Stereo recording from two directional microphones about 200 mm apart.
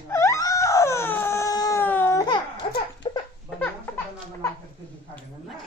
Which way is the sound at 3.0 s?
25° left (ahead or behind).